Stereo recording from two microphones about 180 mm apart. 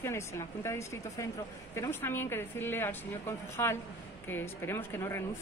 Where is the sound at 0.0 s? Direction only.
15° left (ahead or behind).